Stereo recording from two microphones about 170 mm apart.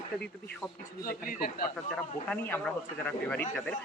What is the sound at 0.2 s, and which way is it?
Speech, 5° left (ahead or behind).